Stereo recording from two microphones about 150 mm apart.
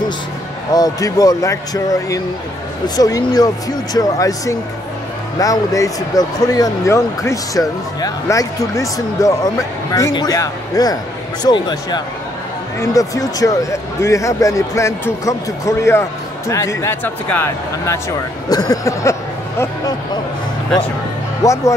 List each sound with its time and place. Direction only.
0.7 s speech: 25° left (ahead or behind)
21.4 s speech: 20° left (ahead or behind)